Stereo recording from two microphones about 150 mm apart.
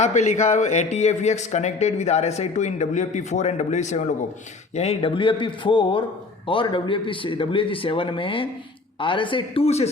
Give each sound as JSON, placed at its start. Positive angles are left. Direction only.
{"t": 0.0, "sound": "speech", "side_deg": 50}